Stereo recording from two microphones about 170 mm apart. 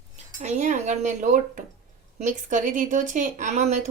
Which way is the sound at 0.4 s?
45° right (ahead or behind).